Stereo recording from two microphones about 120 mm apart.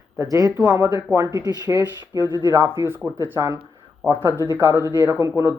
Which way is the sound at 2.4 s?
20° right (ahead or behind).